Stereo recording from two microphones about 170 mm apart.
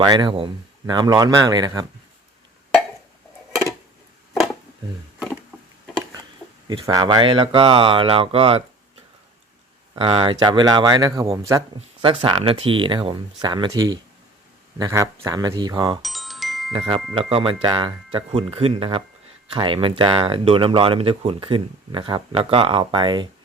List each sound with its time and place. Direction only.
0.0 s speech: 25° right (ahead or behind)
6.7 s speech: 25° right (ahead or behind)
9.9 s speech: 30° right (ahead or behind)
12.0 s speech: 30° right (ahead or behind)
16.0 s glockenspiel: centre (ahead or behind)
16.7 s speech: 25° right (ahead or behind)